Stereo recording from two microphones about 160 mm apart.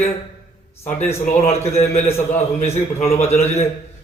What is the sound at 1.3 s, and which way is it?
A man's voice, 40° left (ahead or behind).